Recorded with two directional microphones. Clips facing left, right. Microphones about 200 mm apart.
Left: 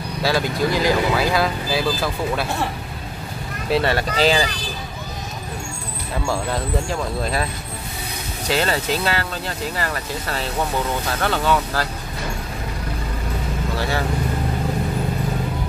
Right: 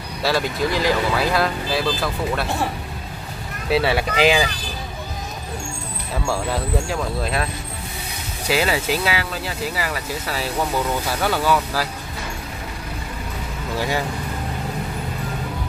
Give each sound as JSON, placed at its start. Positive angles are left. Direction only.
{"t": 0.2, "sound": "speech", "side_deg": 0}
{"t": 3.6, "sound": "speech", "side_deg": -5}
{"t": 6.2, "sound": "speech", "side_deg": 0}
{"t": 8.5, "sound": "speech", "side_deg": -10}
{"t": 13.7, "sound": "speech", "side_deg": -15}